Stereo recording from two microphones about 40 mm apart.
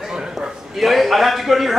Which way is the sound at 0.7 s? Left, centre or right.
Centre.